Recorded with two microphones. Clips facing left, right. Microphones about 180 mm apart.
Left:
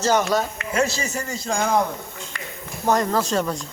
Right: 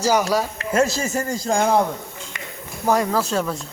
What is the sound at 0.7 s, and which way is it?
A man's voice, 45° right (ahead or behind).